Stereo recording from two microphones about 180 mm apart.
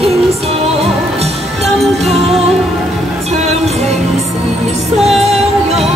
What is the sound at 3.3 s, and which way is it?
Music, 35° right (ahead or behind).